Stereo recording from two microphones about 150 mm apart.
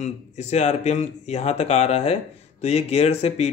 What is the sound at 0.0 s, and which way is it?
Speech, 50° left (ahead or behind).